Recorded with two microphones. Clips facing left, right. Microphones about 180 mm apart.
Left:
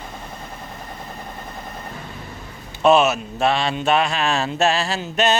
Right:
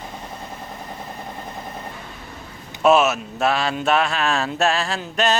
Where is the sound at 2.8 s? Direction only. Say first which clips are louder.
Left 1 dB; 5° right (ahead or behind).